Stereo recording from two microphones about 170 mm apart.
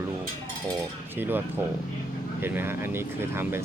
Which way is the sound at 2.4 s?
15° right (ahead or behind).